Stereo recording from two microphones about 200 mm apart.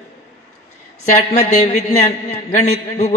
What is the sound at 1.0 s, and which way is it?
A man's voice, 35° left (ahead or behind).